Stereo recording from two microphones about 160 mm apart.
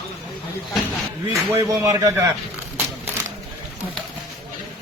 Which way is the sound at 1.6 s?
20° right (ahead or behind).